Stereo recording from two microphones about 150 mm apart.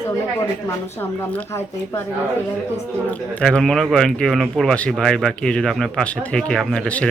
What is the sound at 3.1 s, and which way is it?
Speech, 5° left (ahead or behind).